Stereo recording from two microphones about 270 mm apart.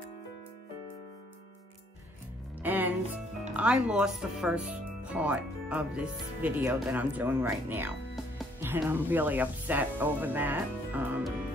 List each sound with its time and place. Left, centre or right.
2.6 s music: centre
3.5 s speech: centre